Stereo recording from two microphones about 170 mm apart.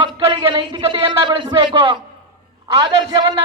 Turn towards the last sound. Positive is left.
turn(degrees=-25)  # may be behind; listen again after turning